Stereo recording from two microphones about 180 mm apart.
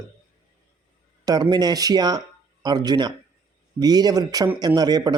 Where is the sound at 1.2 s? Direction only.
20° right (ahead or behind).